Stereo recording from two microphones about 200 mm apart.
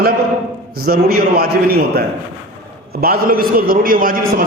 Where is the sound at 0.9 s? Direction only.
45° right (ahead or behind).